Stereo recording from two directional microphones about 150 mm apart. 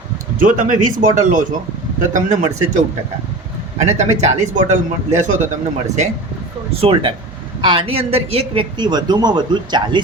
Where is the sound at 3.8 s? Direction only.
50° right (ahead or behind).